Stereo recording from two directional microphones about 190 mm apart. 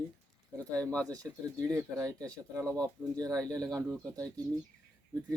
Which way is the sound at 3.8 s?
5° left (ahead or behind).